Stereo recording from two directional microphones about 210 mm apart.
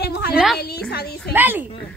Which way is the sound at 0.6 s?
50° left (ahead or behind).